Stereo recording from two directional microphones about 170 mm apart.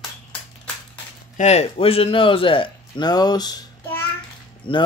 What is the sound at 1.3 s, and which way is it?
Speech, 40° left (ahead or behind).